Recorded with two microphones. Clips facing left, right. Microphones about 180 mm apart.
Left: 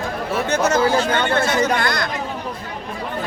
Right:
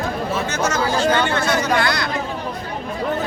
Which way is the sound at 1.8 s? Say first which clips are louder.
Right 1 dB; 50° left (ahead or behind).